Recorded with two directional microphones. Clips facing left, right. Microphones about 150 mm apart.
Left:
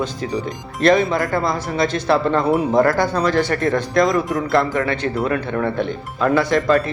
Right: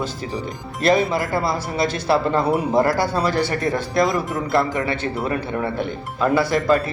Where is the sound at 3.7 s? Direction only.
5° right (ahead or behind).